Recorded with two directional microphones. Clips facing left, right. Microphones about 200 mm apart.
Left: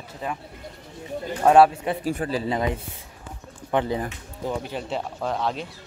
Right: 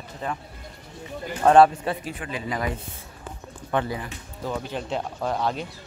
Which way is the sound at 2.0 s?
40° left (ahead or behind).